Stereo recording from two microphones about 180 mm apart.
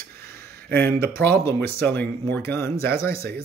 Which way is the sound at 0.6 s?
60° right (ahead or behind).